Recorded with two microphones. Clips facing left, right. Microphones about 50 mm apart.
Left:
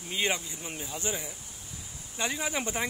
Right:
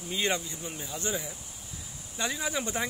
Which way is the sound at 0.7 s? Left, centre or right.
Centre.